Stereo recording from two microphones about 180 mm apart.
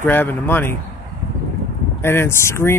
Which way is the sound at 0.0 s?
10° left (ahead or behind).